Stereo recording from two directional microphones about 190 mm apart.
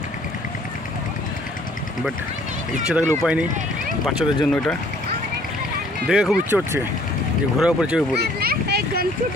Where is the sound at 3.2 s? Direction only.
5° right (ahead or behind).